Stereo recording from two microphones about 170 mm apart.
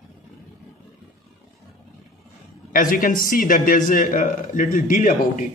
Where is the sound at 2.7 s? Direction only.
55° left (ahead or behind).